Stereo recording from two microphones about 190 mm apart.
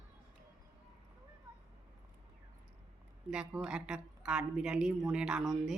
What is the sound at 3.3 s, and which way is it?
Speech, 5° right (ahead or behind).